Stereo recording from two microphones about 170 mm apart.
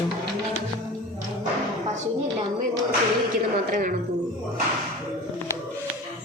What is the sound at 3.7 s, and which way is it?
Speech, 50° right (ahead or behind).